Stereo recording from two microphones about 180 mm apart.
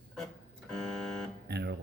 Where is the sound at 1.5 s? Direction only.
65° right (ahead or behind).